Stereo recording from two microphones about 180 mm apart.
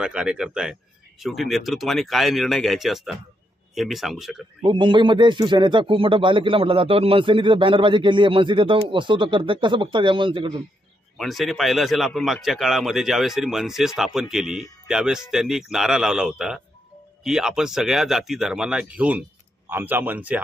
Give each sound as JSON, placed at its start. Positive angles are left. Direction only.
{"t": 0.0, "sound": "a man's voice", "side_deg": -5}
{"t": 4.6, "sound": "speech", "side_deg": -25}
{"t": 11.1, "sound": "a man's voice", "side_deg": 0}